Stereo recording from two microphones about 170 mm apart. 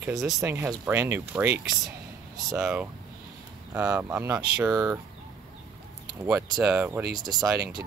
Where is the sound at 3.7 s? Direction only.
10° right (ahead or behind).